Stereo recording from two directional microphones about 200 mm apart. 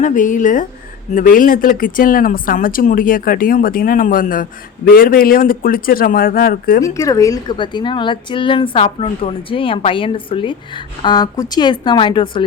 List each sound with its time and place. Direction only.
0.0 s speech: 40° left (ahead or behind)
6.8 s a woman's voice: 15° left (ahead or behind)